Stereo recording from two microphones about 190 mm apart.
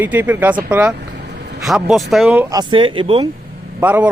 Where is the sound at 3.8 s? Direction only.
10° right (ahead or behind).